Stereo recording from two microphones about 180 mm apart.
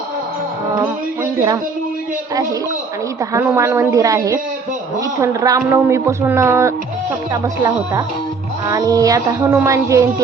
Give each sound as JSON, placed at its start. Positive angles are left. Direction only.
{"t": 1.2, "sound": "speech", "side_deg": -15}
{"t": 3.3, "sound": "a woman's voice", "side_deg": -15}